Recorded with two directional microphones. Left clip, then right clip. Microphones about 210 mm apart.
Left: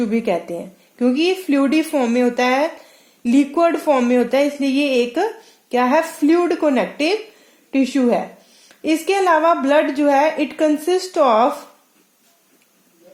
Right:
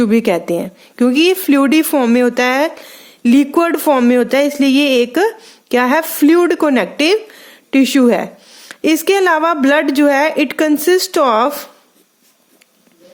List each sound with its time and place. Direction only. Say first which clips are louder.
0.0 s speech: right 6 dB; 40° right (ahead or behind)